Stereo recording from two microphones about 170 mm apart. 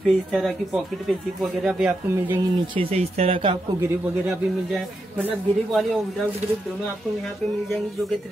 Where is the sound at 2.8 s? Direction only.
35° right (ahead or behind).